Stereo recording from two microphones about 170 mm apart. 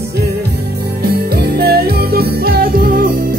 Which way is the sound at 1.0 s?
70° right (ahead or behind).